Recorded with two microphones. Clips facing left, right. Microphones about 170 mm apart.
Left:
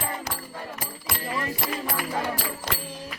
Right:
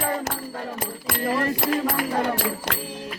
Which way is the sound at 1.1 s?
65° right (ahead or behind).